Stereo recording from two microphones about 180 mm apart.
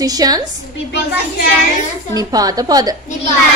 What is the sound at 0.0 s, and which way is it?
Speech, 20° right (ahead or behind).